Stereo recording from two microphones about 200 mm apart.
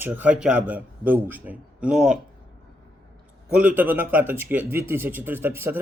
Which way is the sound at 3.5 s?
10° right (ahead or behind).